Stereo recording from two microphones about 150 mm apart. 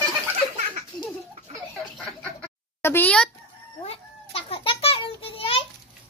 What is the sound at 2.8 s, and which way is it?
Speech, 15° left (ahead or behind).